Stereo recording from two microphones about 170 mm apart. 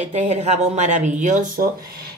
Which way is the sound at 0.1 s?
40° right (ahead or behind).